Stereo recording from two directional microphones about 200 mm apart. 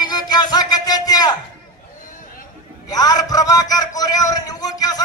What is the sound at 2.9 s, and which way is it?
A man's voice, 20° left (ahead or behind).